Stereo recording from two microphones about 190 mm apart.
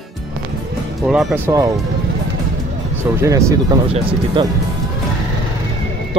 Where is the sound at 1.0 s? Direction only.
Centre (ahead or behind).